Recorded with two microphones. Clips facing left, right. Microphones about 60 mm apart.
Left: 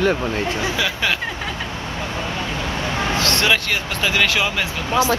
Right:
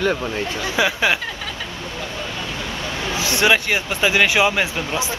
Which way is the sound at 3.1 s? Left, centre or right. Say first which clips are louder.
Right 3 dB; centre.